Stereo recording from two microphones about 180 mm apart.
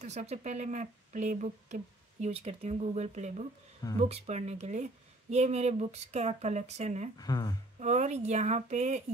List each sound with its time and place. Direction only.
0.0 s speech: 40° right (ahead or behind)
7.2 s speech: 20° left (ahead or behind)
7.8 s speech: 40° right (ahead or behind)